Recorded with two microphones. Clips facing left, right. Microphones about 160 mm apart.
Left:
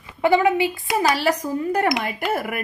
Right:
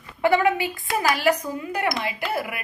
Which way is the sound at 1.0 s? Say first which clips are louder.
Even; 35° left (ahead or behind).